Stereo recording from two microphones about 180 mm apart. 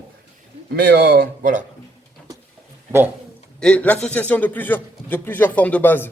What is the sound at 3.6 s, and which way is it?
Speech, 5° left (ahead or behind).